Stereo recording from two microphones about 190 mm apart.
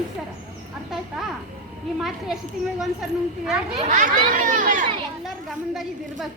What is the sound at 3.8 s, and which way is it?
Speech, 40° right (ahead or behind).